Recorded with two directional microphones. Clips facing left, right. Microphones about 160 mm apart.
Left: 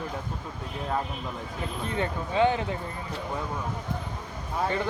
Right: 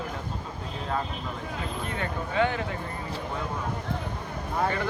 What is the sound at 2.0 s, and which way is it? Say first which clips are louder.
Speech: left 3 dB; 20° left (ahead or behind).